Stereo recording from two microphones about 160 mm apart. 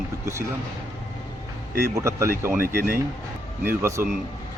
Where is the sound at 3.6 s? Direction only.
15° right (ahead or behind).